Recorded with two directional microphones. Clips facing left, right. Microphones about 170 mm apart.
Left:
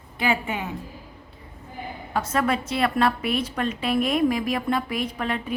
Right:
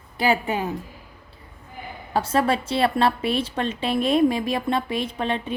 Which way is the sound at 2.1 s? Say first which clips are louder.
Right 3 dB; 30° right (ahead or behind).